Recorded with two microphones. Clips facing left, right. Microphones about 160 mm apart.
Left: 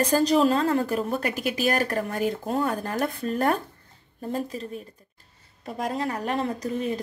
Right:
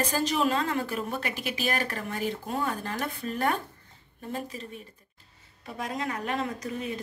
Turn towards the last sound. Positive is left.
turn(degrees=35)  # may be behind; listen again after turning